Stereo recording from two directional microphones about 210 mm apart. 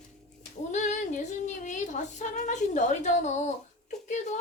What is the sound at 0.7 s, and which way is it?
Female singing, 35° left (ahead or behind).